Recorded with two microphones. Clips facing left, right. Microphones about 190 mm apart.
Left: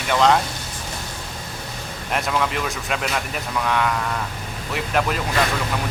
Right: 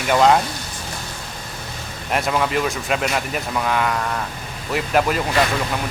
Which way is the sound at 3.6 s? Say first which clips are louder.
Even; 5° right (ahead or behind).